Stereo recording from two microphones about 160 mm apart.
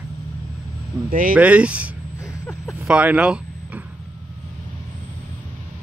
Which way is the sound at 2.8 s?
10° right (ahead or behind).